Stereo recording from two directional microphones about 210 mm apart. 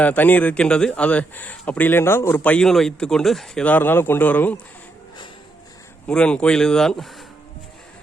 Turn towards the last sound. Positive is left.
turn(degrees=5)  # may be behind; listen again after turning